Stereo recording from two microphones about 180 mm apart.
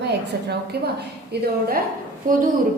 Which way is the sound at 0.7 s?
65° right (ahead or behind).